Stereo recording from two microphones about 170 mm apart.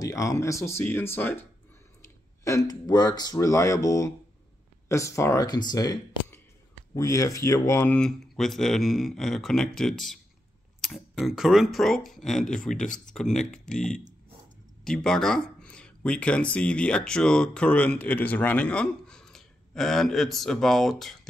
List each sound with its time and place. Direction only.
0.0 s speech: 20° left (ahead or behind)
2.4 s speech: 20° left (ahead or behind); by 21.3 s centre (ahead or behind)